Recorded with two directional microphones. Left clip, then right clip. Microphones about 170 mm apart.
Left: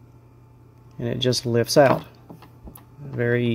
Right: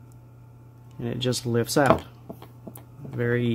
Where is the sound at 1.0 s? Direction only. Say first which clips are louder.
Left 5 dB; 20° left (ahead or behind).